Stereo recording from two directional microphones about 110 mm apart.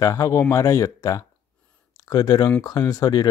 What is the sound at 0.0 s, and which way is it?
Speech, 30° left (ahead or behind).